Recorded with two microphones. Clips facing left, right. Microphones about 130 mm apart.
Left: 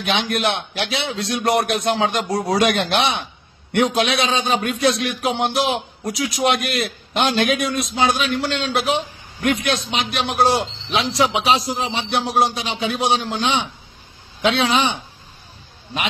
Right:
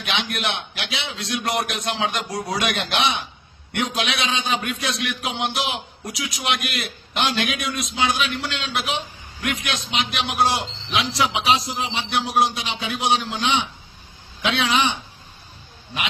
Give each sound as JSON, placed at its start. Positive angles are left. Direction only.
{"t": 0.0, "sound": "a man's voice", "side_deg": 40}